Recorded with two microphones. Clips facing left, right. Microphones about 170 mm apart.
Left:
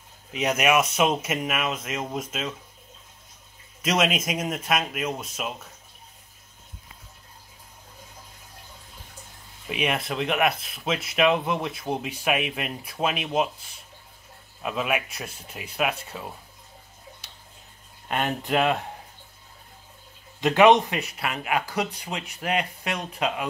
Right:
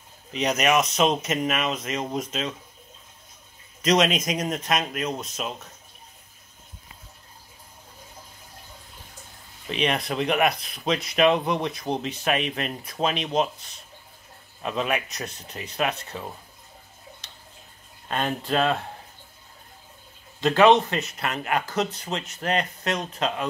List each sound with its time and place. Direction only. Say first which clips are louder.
0.3 s speech: even; 5° left (ahead or behind)
3.8 s speech: right 3 dB; 5° left (ahead or behind)
9.7 s speech: right 1 dB; 5° left (ahead or behind)
18.0 s speech: even; 15° left (ahead or behind)
20.3 s speech: even; 15° left (ahead or behind)